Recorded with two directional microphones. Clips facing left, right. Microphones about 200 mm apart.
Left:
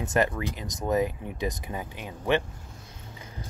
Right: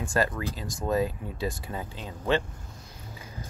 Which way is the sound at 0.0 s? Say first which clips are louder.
Left 2 dB; 20° left (ahead or behind).